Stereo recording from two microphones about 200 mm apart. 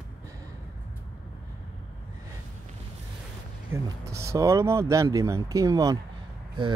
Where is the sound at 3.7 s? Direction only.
15° right (ahead or behind).